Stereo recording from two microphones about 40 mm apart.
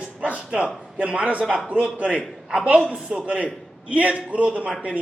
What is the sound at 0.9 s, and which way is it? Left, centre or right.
A man's voice, right.